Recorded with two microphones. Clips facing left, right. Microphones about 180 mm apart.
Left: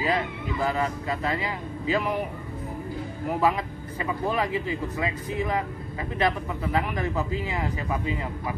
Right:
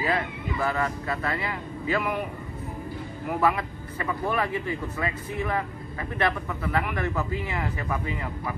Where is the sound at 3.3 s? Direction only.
15° left (ahead or behind).